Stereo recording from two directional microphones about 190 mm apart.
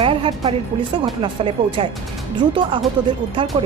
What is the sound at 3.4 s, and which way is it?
Speech, 25° right (ahead or behind).